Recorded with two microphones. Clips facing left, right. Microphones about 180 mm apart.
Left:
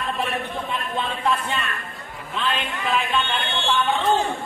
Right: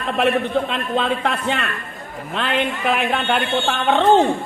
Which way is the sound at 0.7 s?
70° right (ahead or behind).